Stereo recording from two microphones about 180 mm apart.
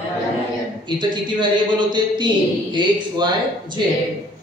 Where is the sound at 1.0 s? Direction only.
25° right (ahead or behind).